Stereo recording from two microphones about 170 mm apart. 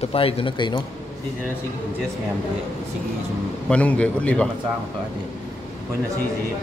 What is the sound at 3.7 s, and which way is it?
Speech, 10° left (ahead or behind).